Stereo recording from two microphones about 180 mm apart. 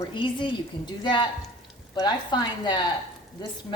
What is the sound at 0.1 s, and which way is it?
A woman's voice, 25° left (ahead or behind).